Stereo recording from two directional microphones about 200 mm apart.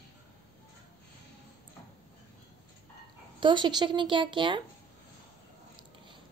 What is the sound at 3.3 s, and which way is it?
A woman's voice, 25° right (ahead or behind).